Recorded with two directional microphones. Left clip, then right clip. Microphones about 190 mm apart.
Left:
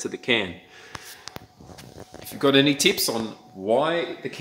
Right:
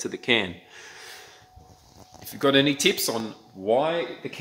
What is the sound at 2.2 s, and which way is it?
Speech, centre (ahead or behind).